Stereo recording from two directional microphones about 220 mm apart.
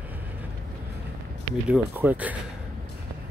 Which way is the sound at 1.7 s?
5° right (ahead or behind).